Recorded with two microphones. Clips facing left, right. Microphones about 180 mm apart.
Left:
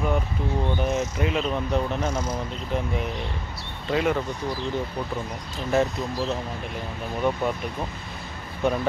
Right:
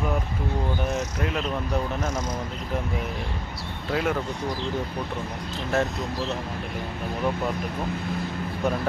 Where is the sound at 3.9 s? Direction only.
Centre (ahead or behind).